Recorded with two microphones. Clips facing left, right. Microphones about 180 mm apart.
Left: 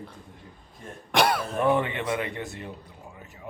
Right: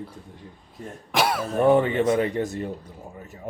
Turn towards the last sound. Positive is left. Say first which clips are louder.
# right 5 dB
turn(degrees=-40)  # may be behind; listen again after turning